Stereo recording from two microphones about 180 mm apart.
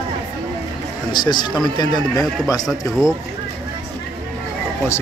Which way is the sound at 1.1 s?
25° left (ahead or behind).